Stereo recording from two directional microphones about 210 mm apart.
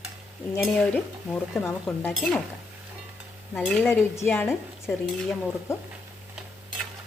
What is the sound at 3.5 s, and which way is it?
A woman's voice, 5° left (ahead or behind).